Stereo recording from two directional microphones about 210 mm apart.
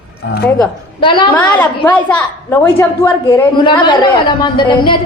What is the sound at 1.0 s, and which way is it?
Speech, 25° left (ahead or behind).